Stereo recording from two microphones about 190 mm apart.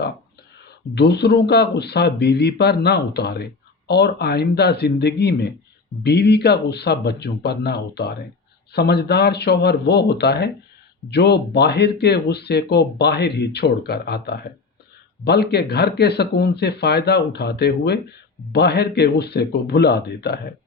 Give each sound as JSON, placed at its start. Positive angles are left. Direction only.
{"t": 0.9, "sound": "speech", "side_deg": 60}